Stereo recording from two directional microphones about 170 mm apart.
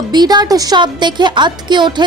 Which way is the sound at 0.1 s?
25° right (ahead or behind).